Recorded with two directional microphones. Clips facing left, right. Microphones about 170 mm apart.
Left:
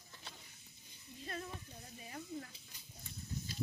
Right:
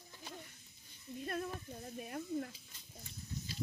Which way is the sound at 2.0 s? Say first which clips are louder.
Right 6 dB; 60° right (ahead or behind).